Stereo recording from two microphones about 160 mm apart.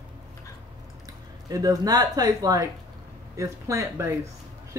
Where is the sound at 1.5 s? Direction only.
25° right (ahead or behind).